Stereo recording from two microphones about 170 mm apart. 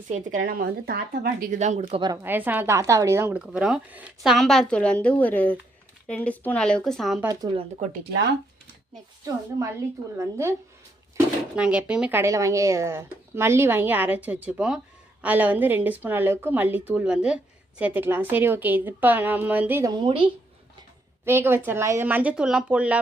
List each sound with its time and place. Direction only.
0.1 s speech: 50° right (ahead or behind)
2.2 s speech: 10° right (ahead or behind)
7.3 s a woman's voice: 25° right (ahead or behind)
10.2 s a woman's voice: 15° right (ahead or behind)
11.5 s a woman's voice: 5° right (ahead or behind)
19.9 s a woman's voice: 30° right (ahead or behind)
21.2 s a woman's voice: 15° right (ahead or behind)